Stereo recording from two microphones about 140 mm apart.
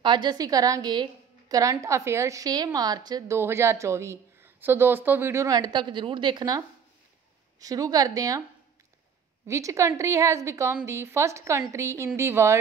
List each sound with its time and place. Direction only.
0.0 s a woman's voice: 30° right (ahead or behind)
3.3 s a woman's voice: 15° right (ahead or behind)
7.6 s a woman's voice: 25° right (ahead or behind)
9.5 s a woman's voice: 20° right (ahead or behind)